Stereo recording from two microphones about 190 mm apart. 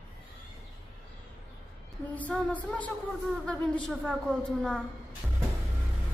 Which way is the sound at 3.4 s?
5° left (ahead or behind).